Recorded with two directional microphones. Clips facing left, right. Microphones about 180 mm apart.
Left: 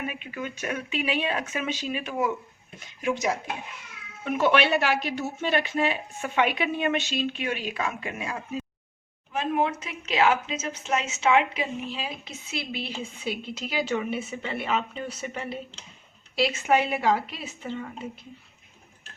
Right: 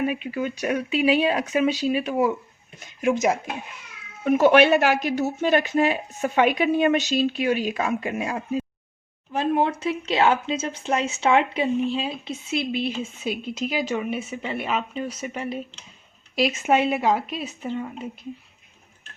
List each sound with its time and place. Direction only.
0.0 s a woman's voice: 35° right (ahead or behind); by 17.7 s 20° right (ahead or behind)